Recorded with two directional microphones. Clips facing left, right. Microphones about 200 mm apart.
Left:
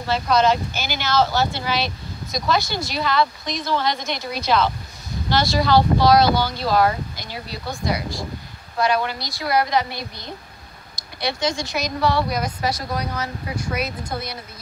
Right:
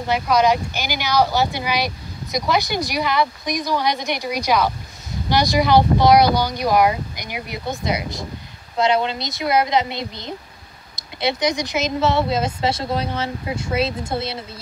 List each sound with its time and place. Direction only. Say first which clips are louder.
0.0 s a woman's voice: right 1 dB; 15° right (ahead or behind)